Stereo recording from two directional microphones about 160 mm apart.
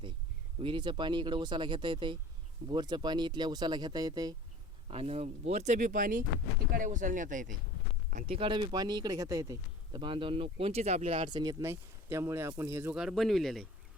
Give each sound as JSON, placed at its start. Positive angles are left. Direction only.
{"t": 0.6, "sound": "speech", "side_deg": -30}
{"t": 4.9, "sound": "speech", "side_deg": -40}
{"t": 8.1, "sound": "speech", "side_deg": -35}
{"t": 11.6, "sound": "speech", "side_deg": -15}